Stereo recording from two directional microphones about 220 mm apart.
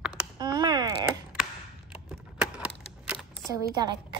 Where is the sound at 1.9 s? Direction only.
5° right (ahead or behind).